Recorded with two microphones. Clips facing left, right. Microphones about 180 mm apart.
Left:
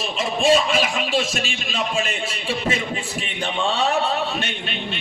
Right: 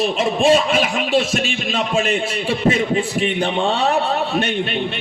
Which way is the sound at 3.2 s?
60° right (ahead or behind).